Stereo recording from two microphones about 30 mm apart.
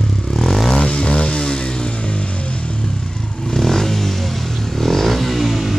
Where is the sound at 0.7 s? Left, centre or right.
Left.